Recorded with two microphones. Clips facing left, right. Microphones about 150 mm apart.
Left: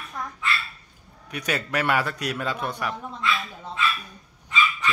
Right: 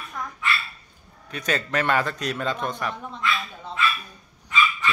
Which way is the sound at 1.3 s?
10° left (ahead or behind).